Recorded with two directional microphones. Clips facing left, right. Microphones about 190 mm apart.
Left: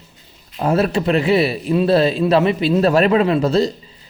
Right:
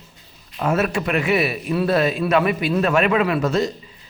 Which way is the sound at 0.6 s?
35° left (ahead or behind).